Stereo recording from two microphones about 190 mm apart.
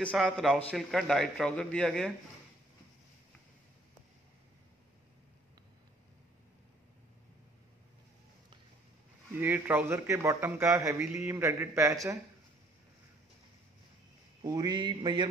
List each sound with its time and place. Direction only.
0.1 s a man's voice: 5° right (ahead or behind)
9.4 s a man's voice: 10° right (ahead or behind)
14.4 s a sound: 20° right (ahead or behind)